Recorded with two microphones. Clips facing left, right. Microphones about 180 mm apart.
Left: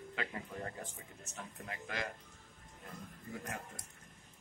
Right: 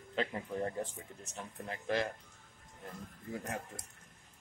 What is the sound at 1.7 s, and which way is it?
Speech, 30° right (ahead or behind).